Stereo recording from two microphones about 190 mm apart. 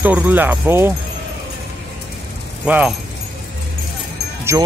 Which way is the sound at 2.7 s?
5° right (ahead or behind).